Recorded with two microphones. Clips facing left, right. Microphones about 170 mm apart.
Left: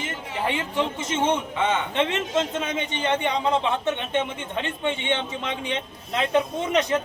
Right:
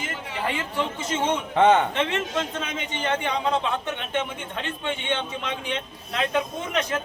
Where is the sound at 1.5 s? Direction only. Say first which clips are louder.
Right 7 dB; 55° right (ahead or behind).